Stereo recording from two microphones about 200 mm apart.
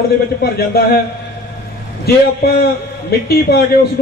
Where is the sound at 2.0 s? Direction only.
50° left (ahead or behind).